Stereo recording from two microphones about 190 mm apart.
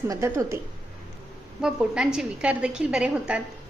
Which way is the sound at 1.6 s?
5° right (ahead or behind).